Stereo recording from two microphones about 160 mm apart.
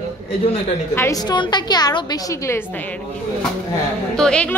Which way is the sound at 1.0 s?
25° left (ahead or behind).